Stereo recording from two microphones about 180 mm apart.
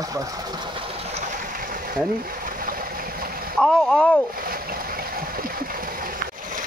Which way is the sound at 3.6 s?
Centre (ahead or behind).